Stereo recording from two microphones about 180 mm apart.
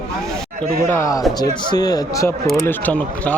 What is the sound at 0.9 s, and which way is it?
Speech, 15° left (ahead or behind).